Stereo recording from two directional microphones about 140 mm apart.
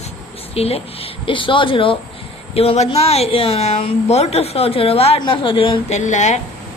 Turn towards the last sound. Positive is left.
turn(degrees=60)  # may be behind; listen again after turning